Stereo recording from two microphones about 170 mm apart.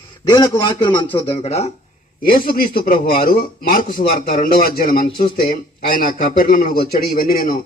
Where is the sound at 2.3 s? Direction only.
55° left (ahead or behind).